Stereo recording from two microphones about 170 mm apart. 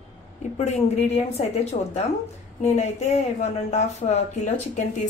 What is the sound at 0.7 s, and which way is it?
Speech, 40° left (ahead or behind).